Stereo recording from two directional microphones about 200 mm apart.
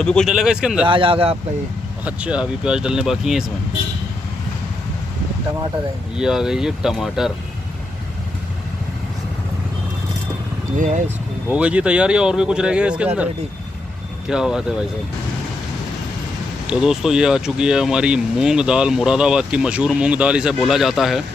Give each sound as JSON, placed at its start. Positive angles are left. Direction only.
{"t": 0.0, "sound": "speech", "side_deg": 5}
{"t": 0.8, "sound": "speech", "side_deg": -25}
{"t": 2.0, "sound": "speech", "side_deg": -5}
{"t": 6.1, "sound": "speech", "side_deg": -5}
{"t": 11.4, "sound": "speech", "side_deg": -5}
{"t": 14.3, "sound": "speech", "side_deg": -5}
{"t": 16.6, "sound": "speech", "side_deg": -5}